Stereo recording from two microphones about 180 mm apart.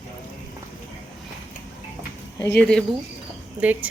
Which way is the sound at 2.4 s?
15° left (ahead or behind).